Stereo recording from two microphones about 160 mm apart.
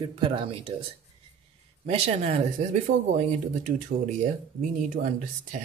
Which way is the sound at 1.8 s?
45° right (ahead or behind).